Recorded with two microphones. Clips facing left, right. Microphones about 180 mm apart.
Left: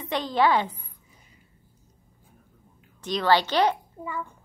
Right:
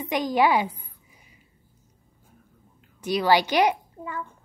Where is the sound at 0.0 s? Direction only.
10° right (ahead or behind).